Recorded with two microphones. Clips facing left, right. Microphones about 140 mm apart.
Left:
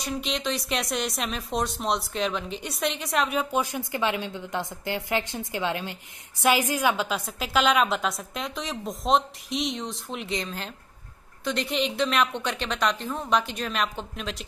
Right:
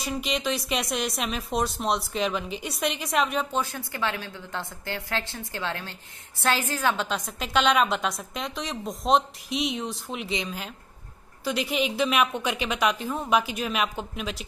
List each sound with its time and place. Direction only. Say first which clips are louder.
0.0 s a woman's voice: right 1 dB; centre (ahead or behind)
3.6 s a woman's voice: left 3 dB; 15° left (ahead or behind); by 14.3 s 5° right (ahead or behind)